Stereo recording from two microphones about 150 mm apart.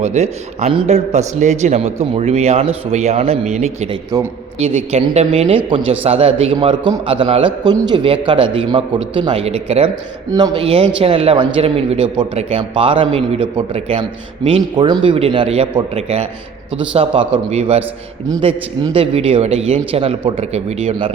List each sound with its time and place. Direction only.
0.0 s a man's voice: 45° right (ahead or behind)
10.3 s a man's voice: 30° right (ahead or behind)
18.3 s a man's voice: 30° right (ahead or behind)